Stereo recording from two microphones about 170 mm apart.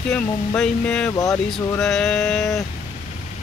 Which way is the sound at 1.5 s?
Centre (ahead or behind).